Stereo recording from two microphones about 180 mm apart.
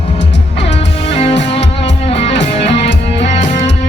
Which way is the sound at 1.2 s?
35° left (ahead or behind).